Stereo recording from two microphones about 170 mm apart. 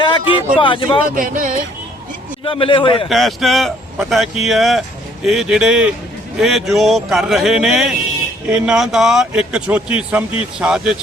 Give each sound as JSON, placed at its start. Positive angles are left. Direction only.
{"t": 0.0, "sound": "a sound", "side_deg": 25}
{"t": 0.6, "sound": "speech", "side_deg": 30}
{"t": 1.1, "sound": "speech", "side_deg": -55}
{"t": 2.4, "sound": "a man's voice", "side_deg": 30}
{"t": 3.1, "sound": "a man's voice", "side_deg": 0}